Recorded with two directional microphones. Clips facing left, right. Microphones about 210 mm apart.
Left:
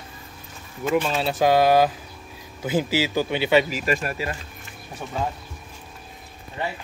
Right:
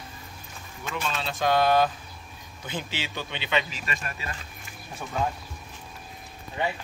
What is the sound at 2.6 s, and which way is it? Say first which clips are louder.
Speech: left 12 dB; 90° left.